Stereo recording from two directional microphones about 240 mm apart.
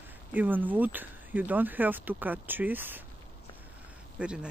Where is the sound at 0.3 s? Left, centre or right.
Centre.